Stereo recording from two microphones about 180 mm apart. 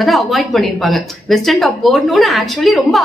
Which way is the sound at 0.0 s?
Centre (ahead or behind).